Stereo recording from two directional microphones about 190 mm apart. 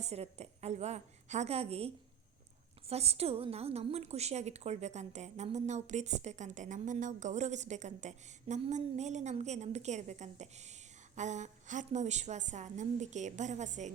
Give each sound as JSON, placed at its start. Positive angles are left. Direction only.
{"t": 0.0, "sound": "a woman's voice", "side_deg": -35}
{"t": 2.9, "sound": "a woman's voice", "side_deg": -35}